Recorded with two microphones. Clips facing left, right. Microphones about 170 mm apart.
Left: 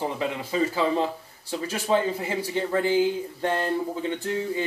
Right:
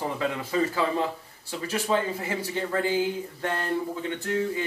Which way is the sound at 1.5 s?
30° left (ahead or behind).